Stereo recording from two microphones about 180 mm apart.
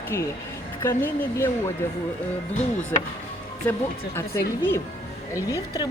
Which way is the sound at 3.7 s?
10° left (ahead or behind).